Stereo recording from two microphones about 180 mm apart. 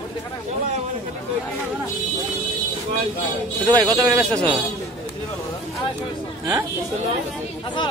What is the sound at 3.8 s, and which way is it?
Speech, 20° right (ahead or behind).